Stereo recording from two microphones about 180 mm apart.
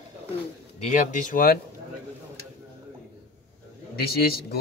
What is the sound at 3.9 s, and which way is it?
Speech, 60° left (ahead or behind).